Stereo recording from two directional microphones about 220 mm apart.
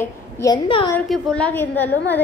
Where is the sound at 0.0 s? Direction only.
15° left (ahead or behind).